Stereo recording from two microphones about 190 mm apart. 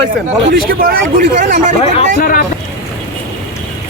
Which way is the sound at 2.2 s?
50° left (ahead or behind).